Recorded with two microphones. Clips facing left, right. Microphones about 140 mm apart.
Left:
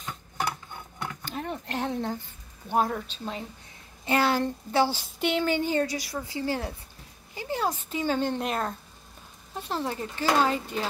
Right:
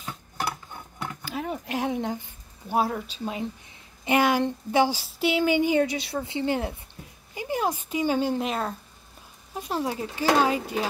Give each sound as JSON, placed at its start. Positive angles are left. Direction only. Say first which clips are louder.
{"t": 0.0, "sound": "cutlery", "louder": "even", "side_deg": -10}
{"t": 1.2, "sound": "a woman's voice", "louder": "right 4 dB", "side_deg": -5}
{"t": 5.9, "sound": "a woman's voice", "louder": "right 3 dB", "side_deg": -25}
{"t": 7.3, "sound": "a sound", "louder": "right 2 dB", "side_deg": -15}
{"t": 7.9, "sound": "speech", "louder": "right 4 dB", "side_deg": -10}